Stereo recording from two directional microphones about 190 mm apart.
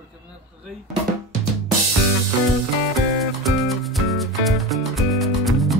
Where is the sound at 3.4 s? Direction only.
Centre (ahead or behind).